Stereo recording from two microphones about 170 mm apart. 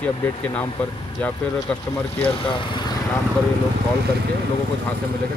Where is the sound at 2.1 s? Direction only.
30° left (ahead or behind).